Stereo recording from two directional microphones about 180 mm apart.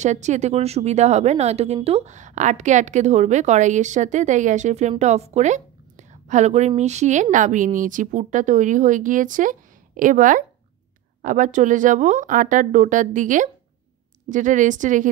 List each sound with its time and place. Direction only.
0.0 s a woman's voice: 40° right (ahead or behind)